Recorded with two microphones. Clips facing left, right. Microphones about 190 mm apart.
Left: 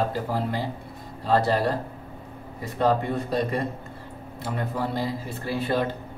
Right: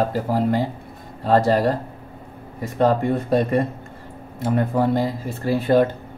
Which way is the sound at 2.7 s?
45° right (ahead or behind).